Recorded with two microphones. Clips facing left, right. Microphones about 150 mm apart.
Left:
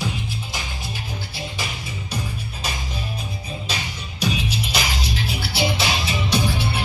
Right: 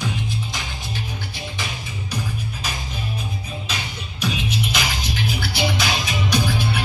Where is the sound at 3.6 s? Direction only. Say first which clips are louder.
Even; 35° left (ahead or behind).